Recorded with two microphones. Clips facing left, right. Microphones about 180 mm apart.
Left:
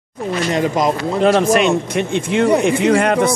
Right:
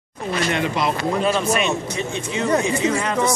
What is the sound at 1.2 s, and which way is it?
Speech, 85° left.